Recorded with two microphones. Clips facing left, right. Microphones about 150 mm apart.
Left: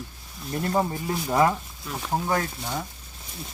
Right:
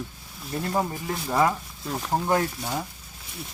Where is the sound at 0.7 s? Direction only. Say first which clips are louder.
Left 2 dB; centre (ahead or behind).